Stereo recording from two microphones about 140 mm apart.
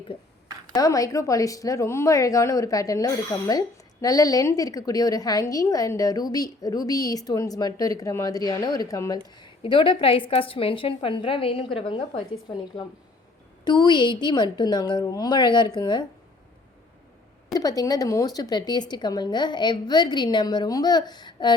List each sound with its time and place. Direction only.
0.7 s a woman's voice: 25° left (ahead or behind)
9.4 s speech: 35° left (ahead or behind)
17.5 s speech: 25° left (ahead or behind)